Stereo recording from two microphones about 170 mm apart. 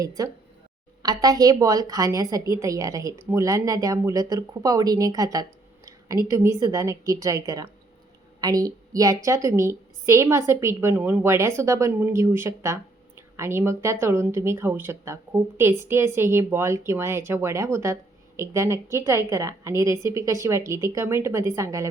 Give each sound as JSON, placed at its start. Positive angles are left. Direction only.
{"t": 0.0, "sound": "a woman's voice", "side_deg": -20}